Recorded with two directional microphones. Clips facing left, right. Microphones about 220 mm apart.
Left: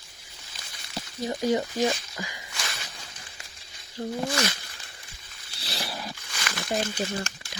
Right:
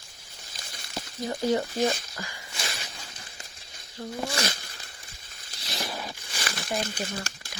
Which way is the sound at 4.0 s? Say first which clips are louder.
Left 5 dB; 35° left (ahead or behind).